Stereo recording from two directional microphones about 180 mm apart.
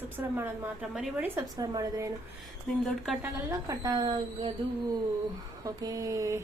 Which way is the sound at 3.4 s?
15° right (ahead or behind).